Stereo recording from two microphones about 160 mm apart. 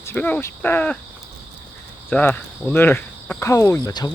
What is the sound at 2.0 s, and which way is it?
Speech, 5° left (ahead or behind).